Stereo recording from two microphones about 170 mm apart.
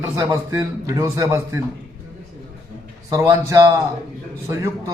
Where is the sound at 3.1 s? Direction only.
15° right (ahead or behind).